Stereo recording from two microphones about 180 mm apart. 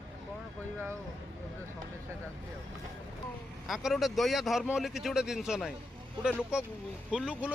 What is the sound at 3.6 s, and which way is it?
A man's voice, centre (ahead or behind).